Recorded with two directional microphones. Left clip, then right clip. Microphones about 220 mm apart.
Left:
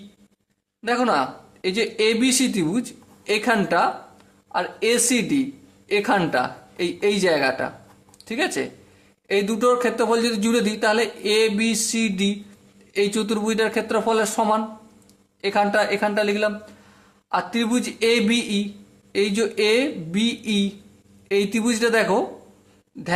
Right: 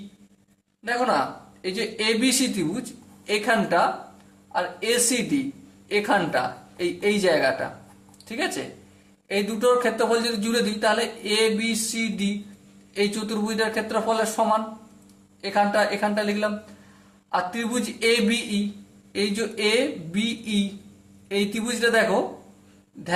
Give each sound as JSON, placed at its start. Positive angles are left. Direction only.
{"t": 1.0, "sound": "a man's voice", "side_deg": 40}